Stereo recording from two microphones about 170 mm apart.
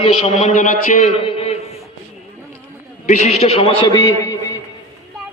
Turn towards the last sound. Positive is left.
turn(degrees=20)  # may be behind; listen again after turning